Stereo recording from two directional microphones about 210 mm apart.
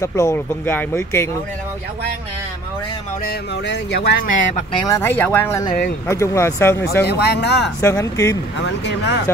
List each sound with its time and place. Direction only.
0.0 s speech: 15° left (ahead or behind)
3.3 s speech: 55° left (ahead or behind)
4.7 s speech: 15° left (ahead or behind)
7.1 s speech: 50° left (ahead or behind)
7.8 s speech: 15° left (ahead or behind)
8.6 s speech: 55° left (ahead or behind)